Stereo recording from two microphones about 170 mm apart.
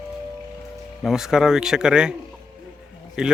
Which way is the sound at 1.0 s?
5° right (ahead or behind).